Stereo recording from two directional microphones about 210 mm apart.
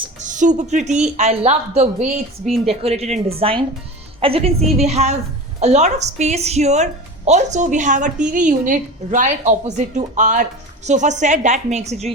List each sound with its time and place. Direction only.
0.3 s a woman's voice: 35° right (ahead or behind)